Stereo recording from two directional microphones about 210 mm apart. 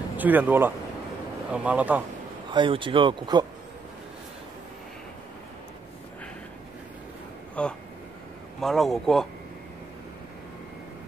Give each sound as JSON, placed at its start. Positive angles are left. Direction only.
{"t": 0.2, "sound": "speech", "side_deg": -10}
{"t": 2.5, "sound": "speech", "side_deg": -25}
{"t": 7.6, "sound": "speech", "side_deg": 5}